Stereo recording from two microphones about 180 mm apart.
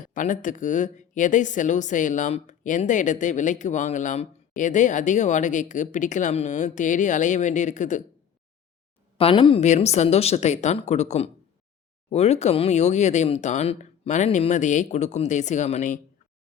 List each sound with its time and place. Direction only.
0.1 s speech: 45° left (ahead or behind)
9.1 s speech: 30° left (ahead or behind)